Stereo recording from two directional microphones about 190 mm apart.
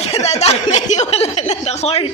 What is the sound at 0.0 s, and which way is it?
Speech, 35° left (ahead or behind).